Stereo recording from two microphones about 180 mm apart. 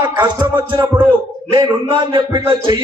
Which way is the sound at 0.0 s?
25° right (ahead or behind).